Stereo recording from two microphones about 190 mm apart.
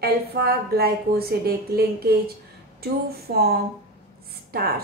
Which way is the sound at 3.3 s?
55° right (ahead or behind).